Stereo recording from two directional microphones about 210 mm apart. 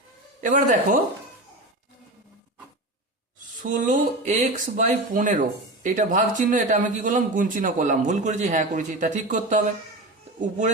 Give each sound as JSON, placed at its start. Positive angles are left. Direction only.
{"t": 0.4, "sound": "speech", "side_deg": -40}
{"t": 3.6, "sound": "speech", "side_deg": -40}